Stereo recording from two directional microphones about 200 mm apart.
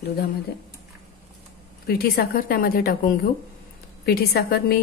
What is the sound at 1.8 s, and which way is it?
A woman's voice, 50° left (ahead or behind).